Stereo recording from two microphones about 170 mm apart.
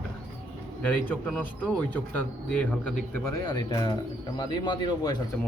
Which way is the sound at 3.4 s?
25° left (ahead or behind).